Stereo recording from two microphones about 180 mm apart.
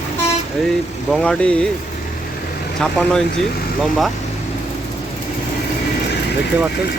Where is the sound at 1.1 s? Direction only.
5° left (ahead or behind).